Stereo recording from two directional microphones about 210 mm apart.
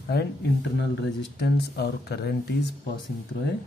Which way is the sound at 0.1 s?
50° left (ahead or behind).